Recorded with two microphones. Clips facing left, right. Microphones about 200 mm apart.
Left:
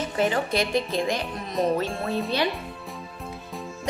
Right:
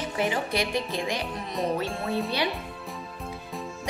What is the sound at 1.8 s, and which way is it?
Music, centre (ahead or behind).